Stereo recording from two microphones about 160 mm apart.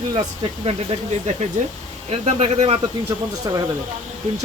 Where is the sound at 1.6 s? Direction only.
50° right (ahead or behind).